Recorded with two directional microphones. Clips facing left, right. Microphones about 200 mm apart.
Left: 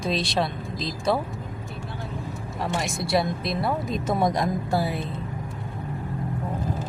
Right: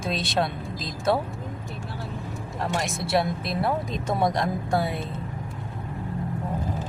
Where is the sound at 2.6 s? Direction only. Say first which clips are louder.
Even; centre (ahead or behind).